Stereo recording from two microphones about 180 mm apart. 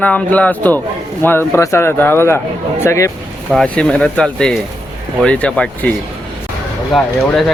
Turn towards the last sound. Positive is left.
turn(degrees=0)  # may be behind; listen again after turning